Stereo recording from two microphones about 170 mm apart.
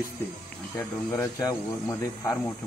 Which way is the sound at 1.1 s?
20° left (ahead or behind).